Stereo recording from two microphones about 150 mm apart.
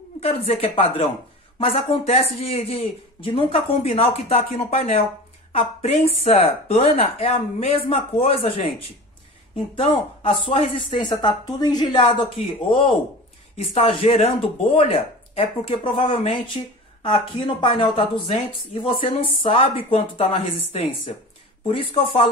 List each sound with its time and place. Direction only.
0.2 s speech: 40° left (ahead or behind)
9.8 s a woman's voice: 40° left (ahead or behind)
16.1 s speech: 50° left (ahead or behind)
17.6 s speech: 35° left (ahead or behind)